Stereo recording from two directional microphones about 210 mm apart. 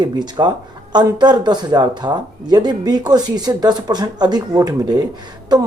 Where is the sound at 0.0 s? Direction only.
20° right (ahead or behind).